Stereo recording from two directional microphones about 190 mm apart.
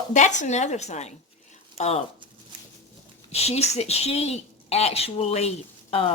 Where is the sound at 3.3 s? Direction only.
35° left (ahead or behind).